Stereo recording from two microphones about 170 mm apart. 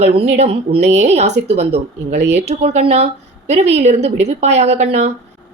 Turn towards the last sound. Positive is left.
turn(degrees=-40)  # may be behind; listen again after turning